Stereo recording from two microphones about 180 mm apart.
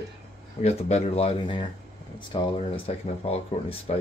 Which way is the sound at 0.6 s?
35° left (ahead or behind).